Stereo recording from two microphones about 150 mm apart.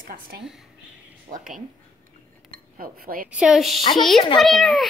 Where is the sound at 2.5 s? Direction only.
70° right (ahead or behind).